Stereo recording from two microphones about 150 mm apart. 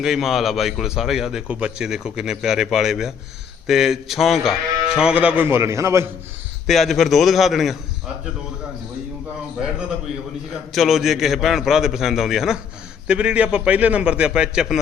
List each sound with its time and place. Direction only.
0.0 s a man's voice: centre (ahead or behind); by 6.1 s 20° right (ahead or behind)
6.7 s a man's voice: centre (ahead or behind)
10.7 s a man's voice: centre (ahead or behind)